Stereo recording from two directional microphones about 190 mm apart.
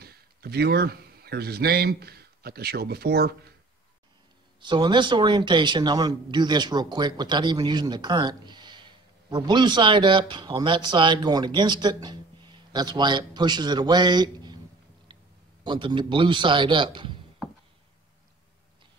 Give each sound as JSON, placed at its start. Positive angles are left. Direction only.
{"t": 0.0, "sound": "speech", "side_deg": -55}
{"t": 4.6, "sound": "a man's voice", "side_deg": -25}
{"t": 15.6, "sound": "a man's voice", "side_deg": -25}